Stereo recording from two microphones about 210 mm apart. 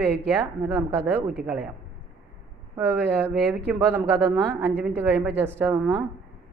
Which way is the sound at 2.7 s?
10° right (ahead or behind).